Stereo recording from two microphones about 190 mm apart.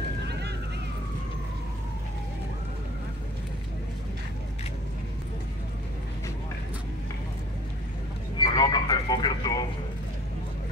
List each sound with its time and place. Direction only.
8.4 s vehicle: 25° left (ahead or behind)